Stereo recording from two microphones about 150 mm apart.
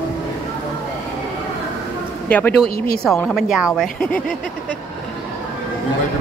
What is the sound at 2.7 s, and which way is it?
Speech, 80° left.